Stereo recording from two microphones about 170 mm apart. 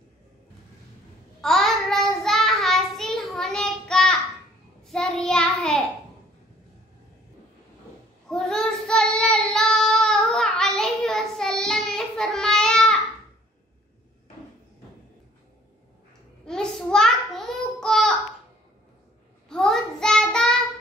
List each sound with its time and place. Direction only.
1.4 s child singing: centre (ahead or behind)
8.3 s child singing: centre (ahead or behind)
16.4 s child singing: 5° left (ahead or behind)
19.5 s child singing: 5° left (ahead or behind)